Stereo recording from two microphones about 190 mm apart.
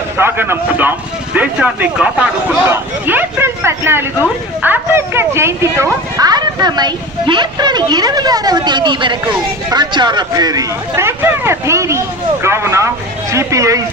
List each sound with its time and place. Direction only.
0.2 s speech: 10° right (ahead or behind)